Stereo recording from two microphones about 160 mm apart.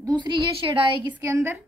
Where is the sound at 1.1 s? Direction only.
15° right (ahead or behind).